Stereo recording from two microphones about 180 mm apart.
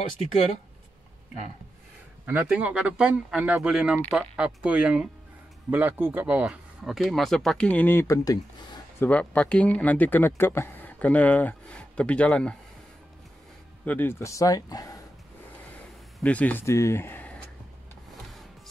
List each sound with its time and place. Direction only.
2.2 s speech: 10° right (ahead or behind)
13.8 s speech: 10° left (ahead or behind)
16.2 s speech: 10° left (ahead or behind)